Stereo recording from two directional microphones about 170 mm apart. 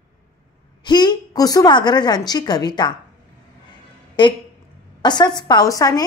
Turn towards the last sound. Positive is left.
turn(degrees=20)  # may be behind; listen again after turning